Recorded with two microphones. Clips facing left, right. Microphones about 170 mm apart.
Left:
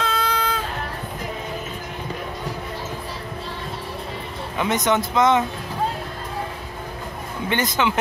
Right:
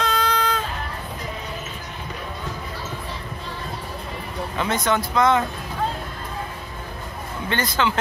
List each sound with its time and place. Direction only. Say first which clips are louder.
0.0 s music: right 1 dB; 5° left (ahead or behind)
4.6 s speech: left 2 dB; 20° left (ahead or behind)
7.4 s speech: left 1 dB; 20° left (ahead or behind)